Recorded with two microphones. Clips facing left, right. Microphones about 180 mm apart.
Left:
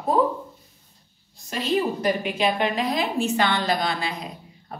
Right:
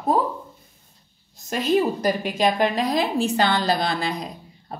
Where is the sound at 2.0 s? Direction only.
40° right (ahead or behind).